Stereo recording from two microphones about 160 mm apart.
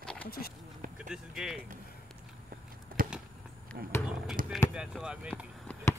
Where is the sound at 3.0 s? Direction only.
65° right (ahead or behind).